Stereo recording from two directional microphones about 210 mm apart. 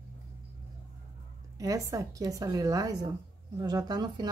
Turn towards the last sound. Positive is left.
turn(degrees=-20)  # may be behind; listen again after turning